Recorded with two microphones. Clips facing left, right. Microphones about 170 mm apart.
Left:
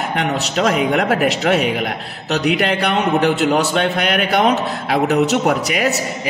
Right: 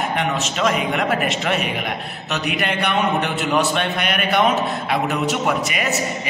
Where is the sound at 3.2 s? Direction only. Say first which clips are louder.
Left 5 dB; 40° left (ahead or behind).